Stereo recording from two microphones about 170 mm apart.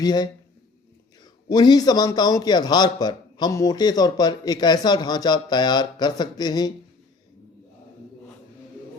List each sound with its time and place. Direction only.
0.0 s a man's voice: 25° left (ahead or behind)